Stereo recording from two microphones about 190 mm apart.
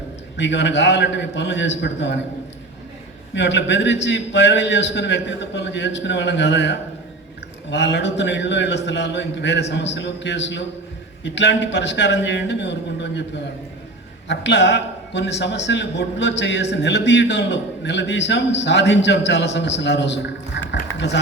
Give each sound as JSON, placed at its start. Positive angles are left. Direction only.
{"t": 0.3, "sound": "a man's voice", "side_deg": 65}
{"t": 3.3, "sound": "a man's voice", "side_deg": 65}
{"t": 14.3, "sound": "a man's voice", "side_deg": 65}
{"t": 20.6, "sound": "a sound", "side_deg": 70}